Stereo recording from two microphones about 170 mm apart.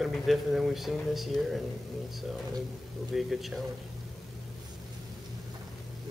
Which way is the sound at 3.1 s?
Centre (ahead or behind).